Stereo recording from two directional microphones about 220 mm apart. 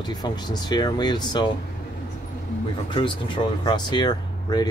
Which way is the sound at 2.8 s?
20° left (ahead or behind).